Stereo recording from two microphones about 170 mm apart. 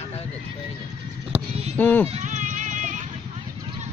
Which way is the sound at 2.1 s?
45° right (ahead or behind).